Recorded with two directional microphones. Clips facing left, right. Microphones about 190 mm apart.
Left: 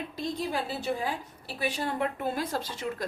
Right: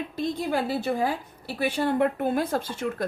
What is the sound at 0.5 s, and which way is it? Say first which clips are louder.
A woman's voice: right 5 dB; 55° right (ahead or behind).